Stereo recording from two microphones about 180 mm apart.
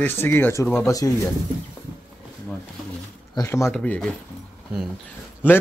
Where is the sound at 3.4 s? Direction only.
15° left (ahead or behind).